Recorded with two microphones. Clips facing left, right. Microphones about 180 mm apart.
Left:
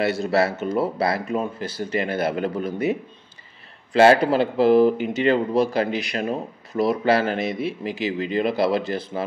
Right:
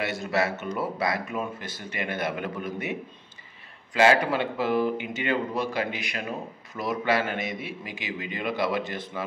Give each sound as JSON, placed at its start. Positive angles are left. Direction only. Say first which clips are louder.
{"t": 0.0, "sound": "a man's voice", "louder": "left 6 dB", "side_deg": 35}